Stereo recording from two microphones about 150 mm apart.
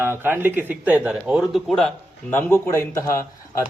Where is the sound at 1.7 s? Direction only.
5° left (ahead or behind).